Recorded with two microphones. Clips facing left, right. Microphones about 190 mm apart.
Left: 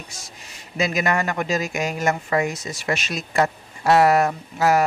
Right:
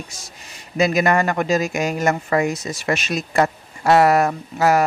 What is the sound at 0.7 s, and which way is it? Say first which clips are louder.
A man's voice: right 5 dB; 45° right (ahead or behind).